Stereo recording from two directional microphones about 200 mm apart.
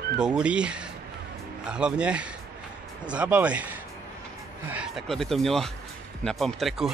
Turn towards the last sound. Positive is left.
turn(degrees=0)  # may be behind; listen again after turning